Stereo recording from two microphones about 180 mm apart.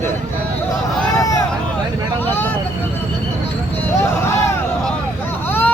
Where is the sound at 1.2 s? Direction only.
15° left (ahead or behind).